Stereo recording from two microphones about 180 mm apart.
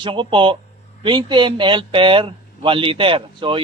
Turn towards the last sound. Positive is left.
turn(degrees=-30)  # may be behind; listen again after turning